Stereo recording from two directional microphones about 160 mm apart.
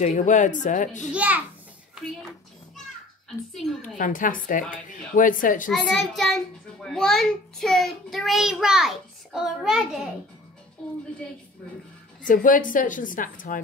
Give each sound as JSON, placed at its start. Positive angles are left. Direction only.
{"t": 0.0, "sound": "a woman's voice", "side_deg": 50}
{"t": 1.1, "sound": "a child's voice", "side_deg": -10}
{"t": 4.0, "sound": "a woman's voice", "side_deg": 55}
{"t": 5.7, "sound": "a child's voice", "side_deg": 0}
{"t": 12.3, "sound": "a woman's voice", "side_deg": 55}